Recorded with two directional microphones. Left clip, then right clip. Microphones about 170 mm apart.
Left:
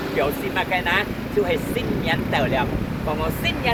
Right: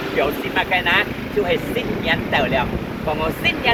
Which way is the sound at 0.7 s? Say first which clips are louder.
Right 4 dB; 35° left (ahead or behind).